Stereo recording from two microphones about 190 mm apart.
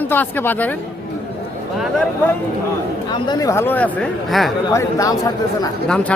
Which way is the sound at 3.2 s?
20° left (ahead or behind).